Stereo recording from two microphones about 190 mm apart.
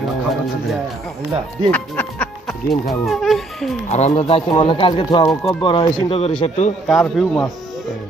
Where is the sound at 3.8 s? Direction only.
35° left (ahead or behind).